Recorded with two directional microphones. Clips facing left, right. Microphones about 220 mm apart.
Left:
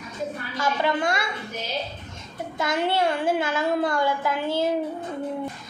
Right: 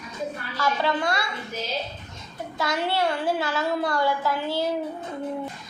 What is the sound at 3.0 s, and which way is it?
Child singing, 20° left (ahead or behind).